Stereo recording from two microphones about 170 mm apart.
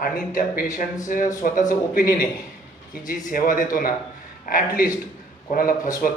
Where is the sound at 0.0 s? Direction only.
55° left (ahead or behind).